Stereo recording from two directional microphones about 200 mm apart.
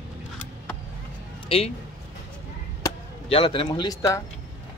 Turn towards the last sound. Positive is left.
turn(degrees=15)  # may be behind; listen again after turning